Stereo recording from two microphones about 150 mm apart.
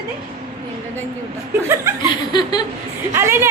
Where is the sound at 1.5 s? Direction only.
20° right (ahead or behind).